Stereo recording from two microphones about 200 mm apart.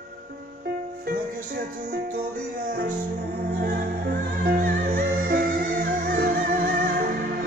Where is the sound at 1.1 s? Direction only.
50° right (ahead or behind).